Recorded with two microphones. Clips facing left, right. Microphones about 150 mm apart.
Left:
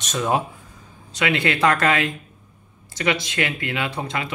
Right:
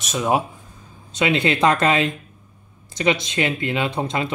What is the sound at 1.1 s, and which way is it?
Speech, 20° right (ahead or behind).